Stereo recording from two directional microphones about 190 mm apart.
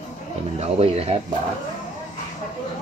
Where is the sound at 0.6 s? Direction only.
30° right (ahead or behind).